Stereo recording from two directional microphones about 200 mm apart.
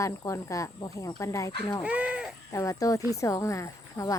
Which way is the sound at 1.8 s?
5° right (ahead or behind).